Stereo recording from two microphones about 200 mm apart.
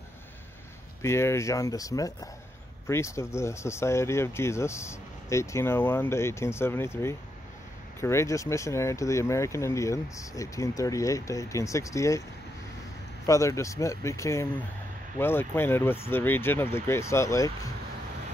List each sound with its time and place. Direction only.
1.0 s speech: 15° left (ahead or behind)
13.3 s speech: 15° left (ahead or behind)